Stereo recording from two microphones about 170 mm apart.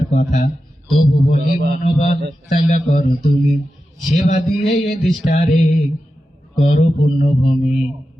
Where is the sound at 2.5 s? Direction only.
45° left (ahead or behind).